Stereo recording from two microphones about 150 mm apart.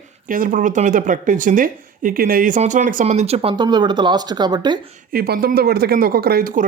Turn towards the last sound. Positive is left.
turn(degrees=-75)  # may be behind; listen again after turning